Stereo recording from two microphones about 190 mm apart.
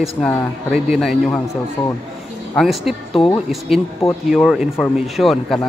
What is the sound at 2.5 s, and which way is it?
A man's voice, centre (ahead or behind).